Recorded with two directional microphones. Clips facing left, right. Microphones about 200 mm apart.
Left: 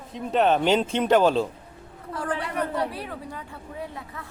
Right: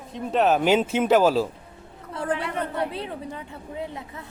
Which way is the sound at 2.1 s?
25° right (ahead or behind).